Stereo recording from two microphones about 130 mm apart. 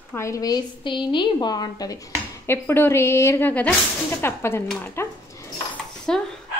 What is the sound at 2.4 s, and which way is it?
Speech, 15° left (ahead or behind).